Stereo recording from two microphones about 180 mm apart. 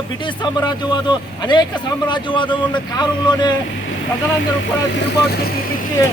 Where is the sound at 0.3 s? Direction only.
25° left (ahead or behind).